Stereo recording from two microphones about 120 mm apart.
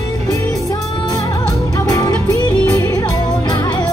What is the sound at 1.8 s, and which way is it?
Music, 30° left (ahead or behind).